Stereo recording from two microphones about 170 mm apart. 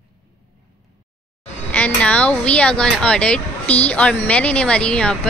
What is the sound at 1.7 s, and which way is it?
A woman's voice, 5° left (ahead or behind).